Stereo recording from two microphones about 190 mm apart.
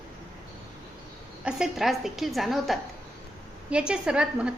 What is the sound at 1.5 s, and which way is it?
A woman's voice, 5° right (ahead or behind).